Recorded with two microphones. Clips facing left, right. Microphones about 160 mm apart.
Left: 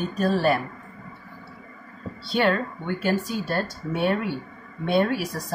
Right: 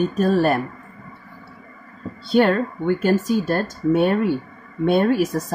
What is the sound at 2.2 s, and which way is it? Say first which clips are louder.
A woman's voice: right 6 dB; 45° right (ahead or behind).